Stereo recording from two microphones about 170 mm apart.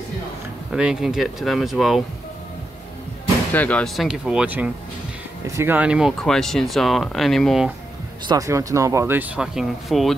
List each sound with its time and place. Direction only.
0.7 s speech: 5° right (ahead or behind)
3.5 s speech: 10° left (ahead or behind)
8.3 s speech: 20° right (ahead or behind); by 10.1 s centre (ahead or behind)